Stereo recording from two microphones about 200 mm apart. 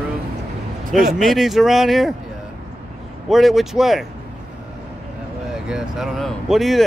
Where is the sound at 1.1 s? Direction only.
Centre (ahead or behind).